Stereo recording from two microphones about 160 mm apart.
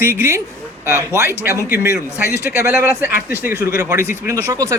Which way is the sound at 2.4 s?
15° right (ahead or behind).